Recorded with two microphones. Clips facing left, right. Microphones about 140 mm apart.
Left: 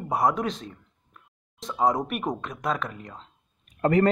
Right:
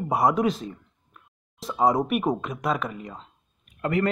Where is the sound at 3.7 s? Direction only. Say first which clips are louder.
Left 4 dB; 40° left (ahead or behind).